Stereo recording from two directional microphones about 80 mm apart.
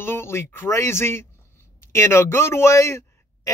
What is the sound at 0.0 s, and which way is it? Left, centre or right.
Speech, left.